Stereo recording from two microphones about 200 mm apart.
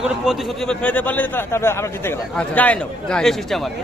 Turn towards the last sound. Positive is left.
turn(degrees=0)  # may be behind; listen again after turning